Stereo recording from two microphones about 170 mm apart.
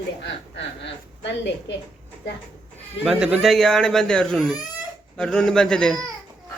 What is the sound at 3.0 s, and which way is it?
Speech, 5° right (ahead or behind).